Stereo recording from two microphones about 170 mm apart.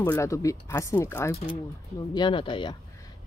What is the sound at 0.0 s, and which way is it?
Speech, 15° left (ahead or behind).